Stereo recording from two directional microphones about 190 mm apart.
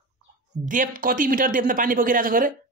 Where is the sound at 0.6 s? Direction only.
45° right (ahead or behind).